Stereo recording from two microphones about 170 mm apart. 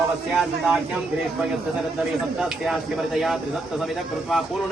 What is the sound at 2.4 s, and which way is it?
Speech, 5° right (ahead or behind).